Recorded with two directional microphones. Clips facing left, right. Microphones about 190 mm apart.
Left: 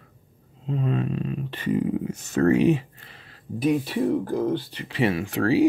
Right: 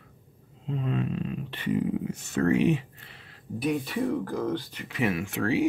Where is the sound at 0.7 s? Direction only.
40° left (ahead or behind).